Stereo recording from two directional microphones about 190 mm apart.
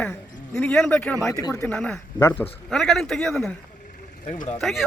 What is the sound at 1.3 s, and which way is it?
Speech, 20° left (ahead or behind).